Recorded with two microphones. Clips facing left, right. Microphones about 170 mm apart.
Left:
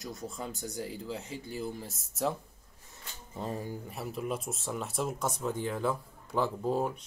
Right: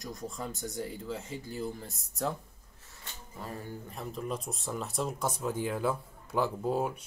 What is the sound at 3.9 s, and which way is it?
Speech, 5° left (ahead or behind).